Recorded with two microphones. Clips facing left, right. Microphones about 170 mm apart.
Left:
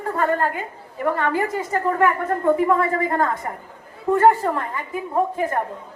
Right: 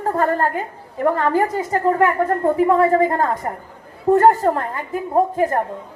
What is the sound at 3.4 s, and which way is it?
A woman's voice, 40° right (ahead or behind).